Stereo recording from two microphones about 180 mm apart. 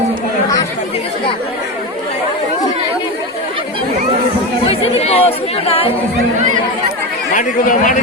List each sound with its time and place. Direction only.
4.7 s speech: 35° left (ahead or behind)
7.3 s speech: 45° left (ahead or behind)